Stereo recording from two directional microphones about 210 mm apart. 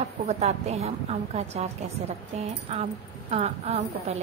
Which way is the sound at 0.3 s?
30° right (ahead or behind).